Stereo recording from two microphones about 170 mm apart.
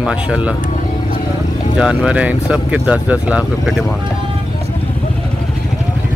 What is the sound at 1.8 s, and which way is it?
Speech, 5° right (ahead or behind).